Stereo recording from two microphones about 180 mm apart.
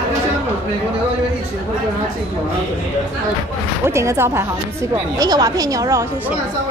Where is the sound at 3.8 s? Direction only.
15° right (ahead or behind).